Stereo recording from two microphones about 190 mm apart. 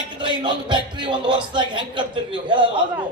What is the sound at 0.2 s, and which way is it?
Speech, 25° right (ahead or behind).